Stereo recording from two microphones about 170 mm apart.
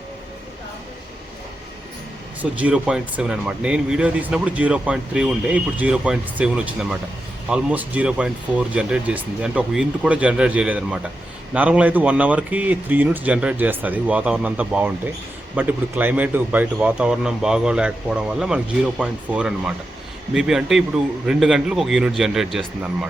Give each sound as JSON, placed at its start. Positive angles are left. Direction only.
{"t": 2.4, "sound": "a man's voice", "side_deg": -10}